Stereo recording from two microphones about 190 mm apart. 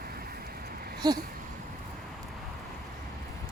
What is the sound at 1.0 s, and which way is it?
Speech, 20° right (ahead or behind).